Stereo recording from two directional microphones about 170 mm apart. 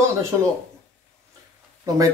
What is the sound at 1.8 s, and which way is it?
Speech, 20° right (ahead or behind).